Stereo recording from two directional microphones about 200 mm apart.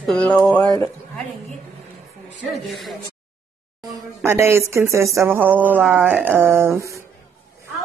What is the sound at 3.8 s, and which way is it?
Speech, 15° right (ahead or behind).